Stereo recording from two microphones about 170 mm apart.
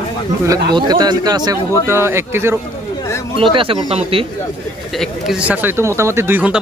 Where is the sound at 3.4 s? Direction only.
30° right (ahead or behind).